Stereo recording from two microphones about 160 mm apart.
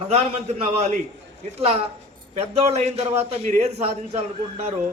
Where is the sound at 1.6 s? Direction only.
40° right (ahead or behind).